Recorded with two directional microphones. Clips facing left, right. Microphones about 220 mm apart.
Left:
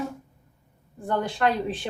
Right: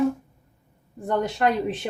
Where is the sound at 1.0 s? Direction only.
20° right (ahead or behind).